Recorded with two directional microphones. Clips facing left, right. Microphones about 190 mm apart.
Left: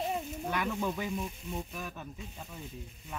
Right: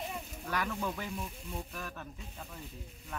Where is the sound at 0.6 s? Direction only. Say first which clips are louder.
Left 2 dB; 5° left (ahead or behind).